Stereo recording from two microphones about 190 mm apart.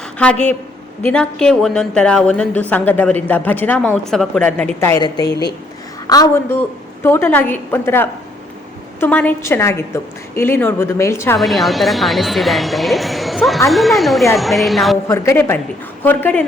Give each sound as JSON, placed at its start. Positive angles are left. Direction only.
{"t": 0.2, "sound": "a woman's voice", "side_deg": 5}
{"t": 11.3, "sound": "speech", "side_deg": 0}
{"t": 15.0, "sound": "a woman's voice", "side_deg": 15}